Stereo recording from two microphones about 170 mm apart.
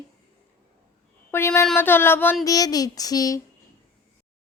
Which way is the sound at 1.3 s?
15° left (ahead or behind).